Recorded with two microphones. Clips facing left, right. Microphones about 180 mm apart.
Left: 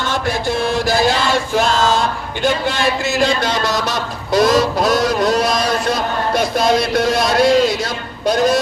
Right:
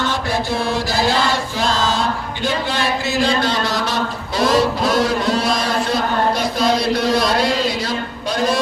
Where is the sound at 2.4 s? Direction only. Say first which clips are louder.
Left 4 dB; 45° left (ahead or behind).